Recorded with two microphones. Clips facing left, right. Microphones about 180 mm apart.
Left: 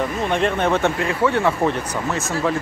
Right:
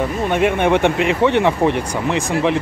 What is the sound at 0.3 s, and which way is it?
Speech, 10° right (ahead or behind).